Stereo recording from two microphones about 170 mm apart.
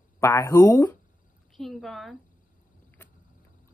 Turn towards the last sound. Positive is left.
turn(degrees=10)  # may be behind; listen again after turning